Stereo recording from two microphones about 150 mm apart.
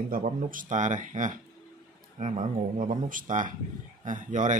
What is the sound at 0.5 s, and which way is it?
Speech, 60° right (ahead or behind).